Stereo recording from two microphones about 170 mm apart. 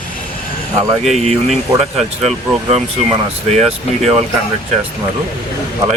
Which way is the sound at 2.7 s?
40° right (ahead or behind).